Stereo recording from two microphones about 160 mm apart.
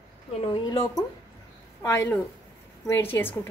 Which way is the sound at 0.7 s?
25° left (ahead or behind).